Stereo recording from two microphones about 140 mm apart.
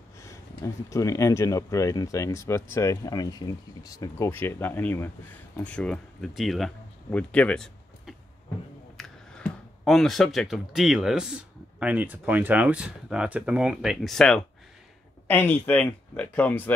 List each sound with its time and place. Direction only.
0.8 s speech: 25° left (ahead or behind)
4.3 s speech: 15° left (ahead or behind); by 13.7 s 10° right (ahead or behind)
13.7 s speech: centre (ahead or behind)